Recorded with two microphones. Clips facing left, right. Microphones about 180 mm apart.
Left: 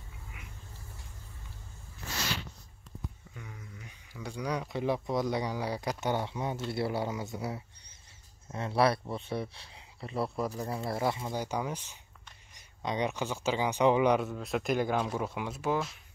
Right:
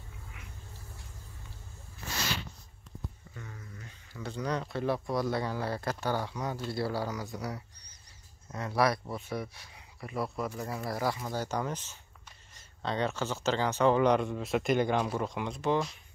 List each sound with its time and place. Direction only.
3.3 s speech: 10° left (ahead or behind); by 10.3 s 30° left (ahead or behind)
10.3 s speech: centre (ahead or behind)
10.6 s speech: 30° left (ahead or behind)
11.4 s speech: 10° left (ahead or behind)